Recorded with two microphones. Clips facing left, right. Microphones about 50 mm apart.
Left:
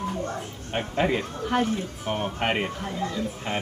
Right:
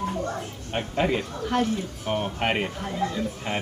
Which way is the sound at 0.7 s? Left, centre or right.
Centre.